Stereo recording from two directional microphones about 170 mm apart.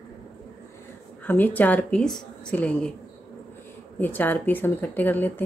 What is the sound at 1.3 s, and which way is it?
Speech, 10° left (ahead or behind).